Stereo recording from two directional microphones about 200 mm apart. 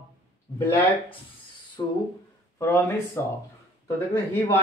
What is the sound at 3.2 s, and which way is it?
Speech, 10° left (ahead or behind).